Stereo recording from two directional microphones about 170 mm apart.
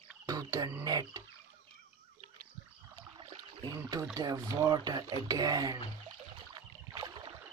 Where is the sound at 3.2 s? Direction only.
30° right (ahead or behind).